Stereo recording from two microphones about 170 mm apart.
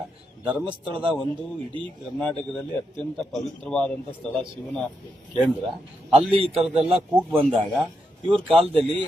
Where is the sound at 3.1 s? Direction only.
Centre (ahead or behind).